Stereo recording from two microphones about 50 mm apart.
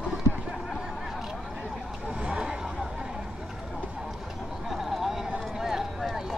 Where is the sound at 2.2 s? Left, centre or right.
Centre.